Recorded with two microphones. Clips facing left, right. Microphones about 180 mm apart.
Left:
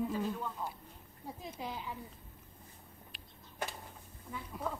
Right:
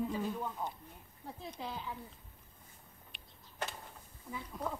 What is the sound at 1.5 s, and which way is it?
Speech, 10° left (ahead or behind).